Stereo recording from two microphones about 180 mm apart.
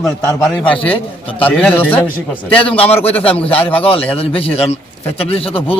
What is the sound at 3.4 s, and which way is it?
A man's voice, 30° left (ahead or behind).